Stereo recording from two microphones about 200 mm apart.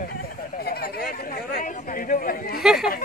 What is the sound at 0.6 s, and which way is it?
Speech, 50° left (ahead or behind).